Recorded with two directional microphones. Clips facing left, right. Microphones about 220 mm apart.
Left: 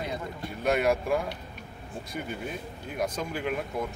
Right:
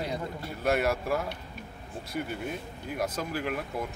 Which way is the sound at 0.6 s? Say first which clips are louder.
Left 2 dB; 5° right (ahead or behind).